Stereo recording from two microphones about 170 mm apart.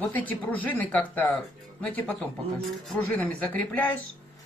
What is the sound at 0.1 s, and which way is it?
Speech, 10° left (ahead or behind).